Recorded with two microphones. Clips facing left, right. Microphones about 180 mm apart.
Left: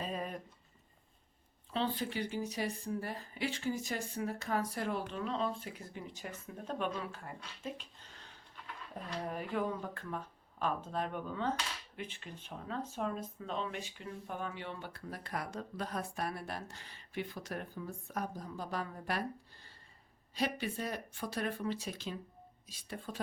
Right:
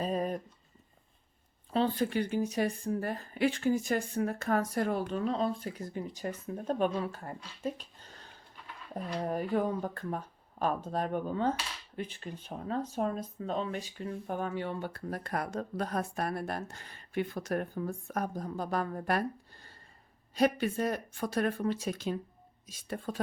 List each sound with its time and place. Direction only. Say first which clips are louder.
0.0 s a sound: right 8 dB; 40° right (ahead or behind)
1.7 s speech: right 7 dB; 45° right (ahead or behind)
20.3 s speech: right 8 dB; 50° right (ahead or behind)